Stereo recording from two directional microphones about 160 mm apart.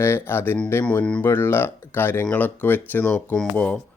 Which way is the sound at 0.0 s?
15° left (ahead or behind).